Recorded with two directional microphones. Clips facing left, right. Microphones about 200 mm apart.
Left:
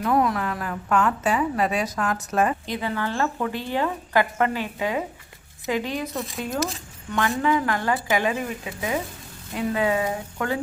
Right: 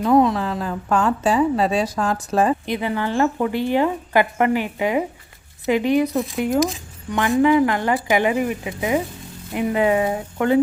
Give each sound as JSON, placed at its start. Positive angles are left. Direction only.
{"t": 0.0, "sound": "a woman's voice", "side_deg": -25}
{"t": 2.6, "sound": "a woman's voice", "side_deg": -15}
{"t": 6.1, "sound": "speech", "side_deg": 0}
{"t": 6.4, "sound": "a woman's voice", "side_deg": -15}